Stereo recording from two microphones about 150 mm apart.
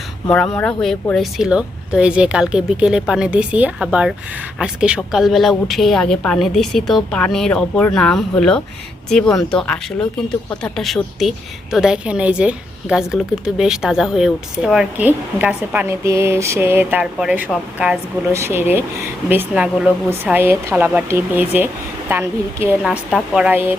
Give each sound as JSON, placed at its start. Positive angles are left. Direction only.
{"t": 0.3, "sound": "a woman's voice", "side_deg": 10}
{"t": 22.8, "sound": "a woman's voice", "side_deg": 0}